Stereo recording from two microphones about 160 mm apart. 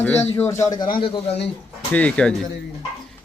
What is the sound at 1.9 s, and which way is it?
Speech, 10° left (ahead or behind).